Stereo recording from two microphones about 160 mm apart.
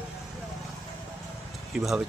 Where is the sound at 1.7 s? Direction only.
5° right (ahead or behind).